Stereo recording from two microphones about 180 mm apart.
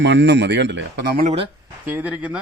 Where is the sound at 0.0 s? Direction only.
75° right (ahead or behind).